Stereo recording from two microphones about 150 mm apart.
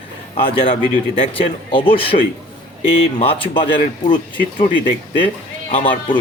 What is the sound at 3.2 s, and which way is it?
Speech, 35° left (ahead or behind).